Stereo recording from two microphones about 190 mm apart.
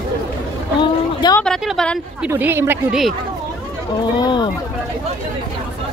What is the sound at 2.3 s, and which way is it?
Speech, 15° right (ahead or behind).